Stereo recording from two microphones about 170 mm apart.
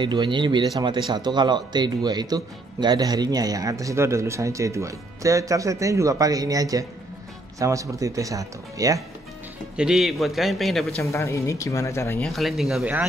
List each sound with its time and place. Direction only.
0.0 s speech: 30° right (ahead or behind)
9.8 s a man's voice: centre (ahead or behind)
11.0 s speech: 15° left (ahead or behind)
12.2 s a man's voice: centre (ahead or behind)